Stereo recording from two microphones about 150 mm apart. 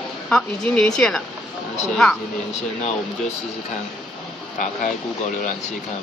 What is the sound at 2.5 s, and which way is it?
Speech, 50° left (ahead or behind).